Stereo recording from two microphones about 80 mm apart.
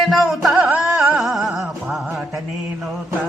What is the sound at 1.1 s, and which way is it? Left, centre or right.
Music, centre.